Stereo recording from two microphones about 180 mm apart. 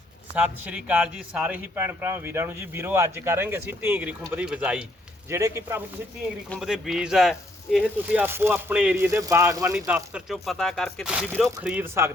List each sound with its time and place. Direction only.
0.3 s a man's voice: 5° right (ahead or behind)
6.6 s a man's voice: centre (ahead or behind)